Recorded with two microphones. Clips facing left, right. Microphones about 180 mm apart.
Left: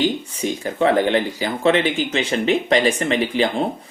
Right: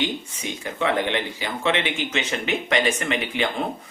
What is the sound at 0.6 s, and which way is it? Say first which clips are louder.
Speech: left 6 dB; 35° left (ahead or behind).